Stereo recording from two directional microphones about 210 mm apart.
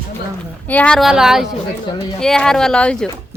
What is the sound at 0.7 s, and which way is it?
Speech, 5° left (ahead or behind).